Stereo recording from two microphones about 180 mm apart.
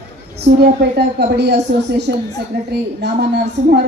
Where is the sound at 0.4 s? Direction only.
70° right (ahead or behind).